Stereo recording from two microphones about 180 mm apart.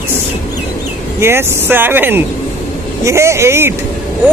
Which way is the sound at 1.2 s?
10° right (ahead or behind).